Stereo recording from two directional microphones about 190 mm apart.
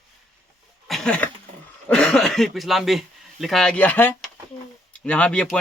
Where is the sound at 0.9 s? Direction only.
5° left (ahead or behind).